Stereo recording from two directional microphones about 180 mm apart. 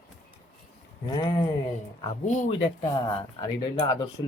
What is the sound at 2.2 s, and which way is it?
Speech, 45° left (ahead or behind).